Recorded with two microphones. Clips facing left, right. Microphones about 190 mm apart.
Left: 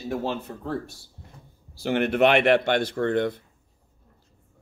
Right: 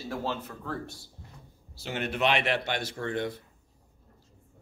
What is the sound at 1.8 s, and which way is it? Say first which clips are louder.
Speech: left 8 dB; 60° left (ahead or behind).